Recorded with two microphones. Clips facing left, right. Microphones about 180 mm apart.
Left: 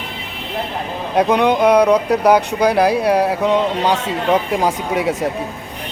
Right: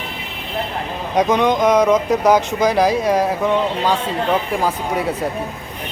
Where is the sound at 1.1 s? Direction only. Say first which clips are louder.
Left 1 dB; 5° left (ahead or behind).